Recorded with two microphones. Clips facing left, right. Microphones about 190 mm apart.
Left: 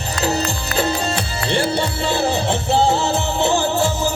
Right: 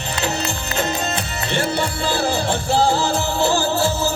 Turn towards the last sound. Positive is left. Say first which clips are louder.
# left 1 dB
turn(degrees=20)  # may be behind; listen again after turning